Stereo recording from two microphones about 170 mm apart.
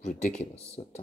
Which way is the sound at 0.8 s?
45° left (ahead or behind).